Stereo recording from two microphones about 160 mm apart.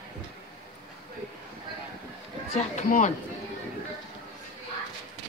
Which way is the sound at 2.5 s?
50° left (ahead or behind).